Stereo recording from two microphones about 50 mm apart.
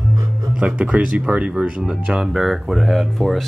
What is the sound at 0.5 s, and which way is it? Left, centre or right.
Speech, right.